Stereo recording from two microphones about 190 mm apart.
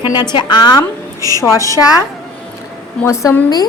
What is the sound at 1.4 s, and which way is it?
A woman's voice, 15° left (ahead or behind).